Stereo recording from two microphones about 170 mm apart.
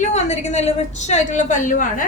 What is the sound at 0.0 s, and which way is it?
A woman's voice, 40° left (ahead or behind).